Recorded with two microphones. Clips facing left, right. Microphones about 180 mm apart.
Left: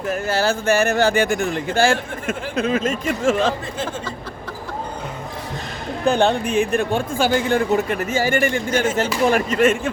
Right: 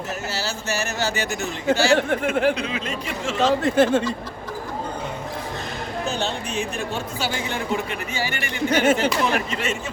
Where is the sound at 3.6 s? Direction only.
75° right (ahead or behind).